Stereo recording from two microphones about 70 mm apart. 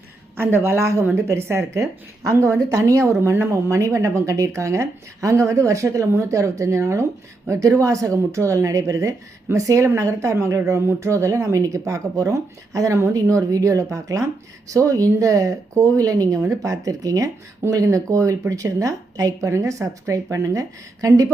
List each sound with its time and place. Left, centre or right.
0.3 s a woman's voice: right